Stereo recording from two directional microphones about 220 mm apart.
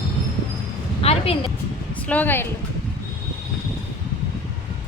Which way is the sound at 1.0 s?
25° left (ahead or behind).